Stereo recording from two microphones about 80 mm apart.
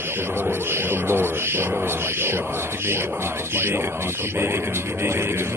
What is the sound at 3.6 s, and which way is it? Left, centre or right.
Speech, right.